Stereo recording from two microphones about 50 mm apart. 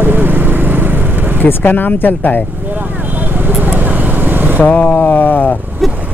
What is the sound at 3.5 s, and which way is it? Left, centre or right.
Vehicle, right.